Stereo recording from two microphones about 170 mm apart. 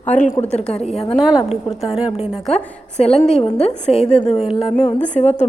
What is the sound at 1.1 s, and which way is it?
A woman's voice, centre (ahead or behind).